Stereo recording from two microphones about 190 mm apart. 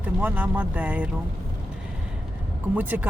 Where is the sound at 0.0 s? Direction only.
10° right (ahead or behind).